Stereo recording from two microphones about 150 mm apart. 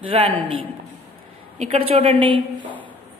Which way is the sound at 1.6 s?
45° right (ahead or behind).